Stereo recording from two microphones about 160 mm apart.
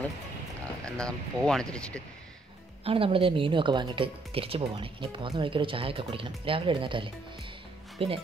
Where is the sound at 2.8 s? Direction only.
35° right (ahead or behind).